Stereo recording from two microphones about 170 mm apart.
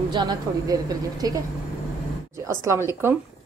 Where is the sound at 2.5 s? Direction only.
15° right (ahead or behind).